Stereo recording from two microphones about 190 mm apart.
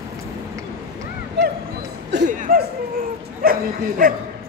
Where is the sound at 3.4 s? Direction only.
50° right (ahead or behind).